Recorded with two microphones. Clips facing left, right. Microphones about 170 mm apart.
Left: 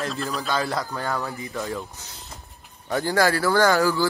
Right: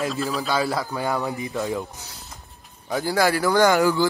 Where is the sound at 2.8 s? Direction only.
10° right (ahead or behind).